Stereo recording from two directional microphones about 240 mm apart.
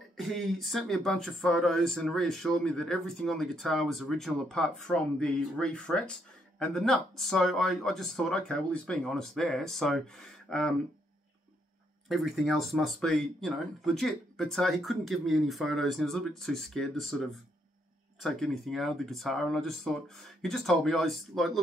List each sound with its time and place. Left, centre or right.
0.2 s speech: centre
12.1 s speech: centre
18.2 s speech: centre